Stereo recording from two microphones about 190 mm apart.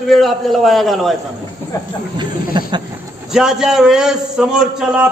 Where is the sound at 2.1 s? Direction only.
25° right (ahead or behind).